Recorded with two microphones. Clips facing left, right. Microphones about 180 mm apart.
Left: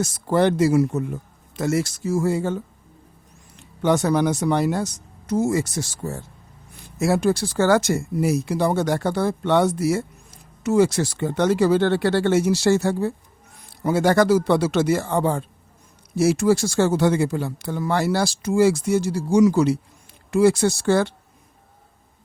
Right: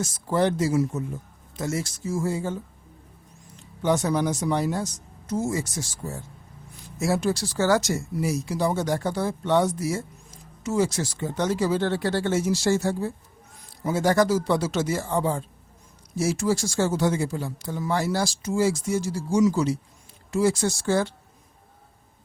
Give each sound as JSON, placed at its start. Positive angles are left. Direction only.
{"t": 0.0, "sound": "speech", "side_deg": 65}
{"t": 3.6, "sound": "speech", "side_deg": 70}